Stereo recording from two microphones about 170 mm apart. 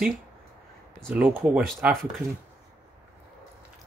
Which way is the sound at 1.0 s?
5° right (ahead or behind).